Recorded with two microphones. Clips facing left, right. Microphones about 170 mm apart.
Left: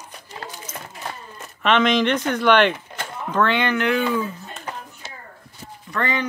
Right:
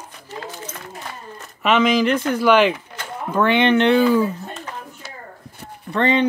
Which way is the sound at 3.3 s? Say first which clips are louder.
Right 4 dB; 15° right (ahead or behind).